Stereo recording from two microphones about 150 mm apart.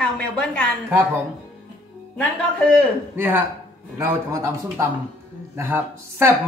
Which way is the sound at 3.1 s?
15° right (ahead or behind).